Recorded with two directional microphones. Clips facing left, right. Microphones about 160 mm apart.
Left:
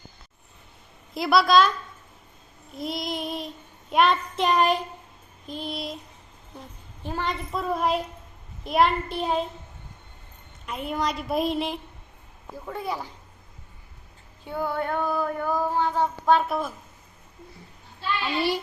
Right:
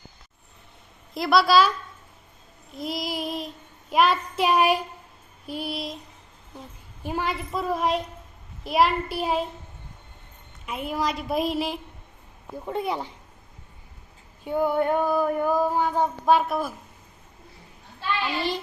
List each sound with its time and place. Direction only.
1.1 s child singing: centre (ahead or behind)
2.7 s child singing: centre (ahead or behind)
7.0 s child singing: 10° right (ahead or behind)
10.7 s child singing: 5° right (ahead or behind)
12.6 s speech: 20° right (ahead or behind)
14.4 s female singing: 15° right (ahead or behind)
16.5 s child singing: 5° right (ahead or behind)